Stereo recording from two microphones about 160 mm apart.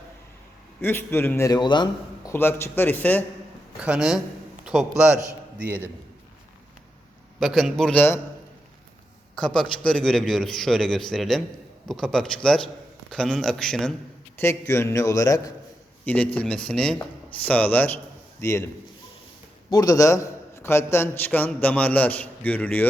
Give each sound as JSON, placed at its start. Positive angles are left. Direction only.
{"t": 0.8, "sound": "a man's voice", "side_deg": 15}
{"t": 2.3, "sound": "a man's voice", "side_deg": 15}
{"t": 3.8, "sound": "a man's voice", "side_deg": -5}
{"t": 7.3, "sound": "a man's voice", "side_deg": 0}
{"t": 9.8, "sound": "a man's voice", "side_deg": 5}
{"t": 14.3, "sound": "a man's voice", "side_deg": 15}
{"t": 16.0, "sound": "a man's voice", "side_deg": 10}
{"t": 19.7, "sound": "a man's voice", "side_deg": 25}